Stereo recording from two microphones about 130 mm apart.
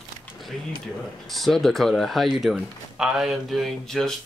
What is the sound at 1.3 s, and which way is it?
Speech, centre (ahead or behind).